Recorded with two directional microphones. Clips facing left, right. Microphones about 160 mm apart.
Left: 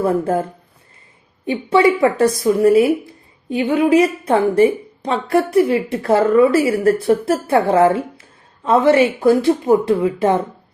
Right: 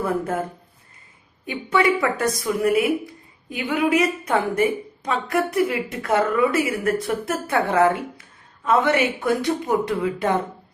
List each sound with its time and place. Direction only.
0.0 s speech: 30° left (ahead or behind)
1.5 s speech: 25° left (ahead or behind)